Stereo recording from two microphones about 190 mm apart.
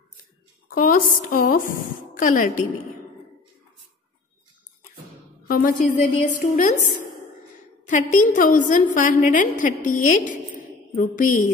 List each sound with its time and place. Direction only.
0.7 s a woman's voice: 50° left (ahead or behind)
5.5 s a woman's voice: 45° left (ahead or behind)
7.9 s a woman's voice: 45° left (ahead or behind)